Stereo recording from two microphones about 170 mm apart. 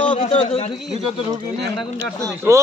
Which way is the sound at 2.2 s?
15° right (ahead or behind).